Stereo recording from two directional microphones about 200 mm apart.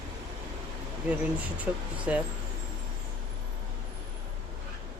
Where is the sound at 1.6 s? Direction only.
10° right (ahead or behind).